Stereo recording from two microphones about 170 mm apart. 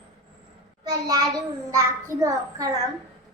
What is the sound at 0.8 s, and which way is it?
A child's voice, 20° right (ahead or behind).